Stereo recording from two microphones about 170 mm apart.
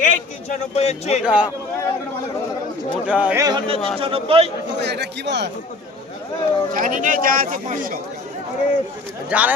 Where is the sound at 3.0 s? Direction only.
10° right (ahead or behind).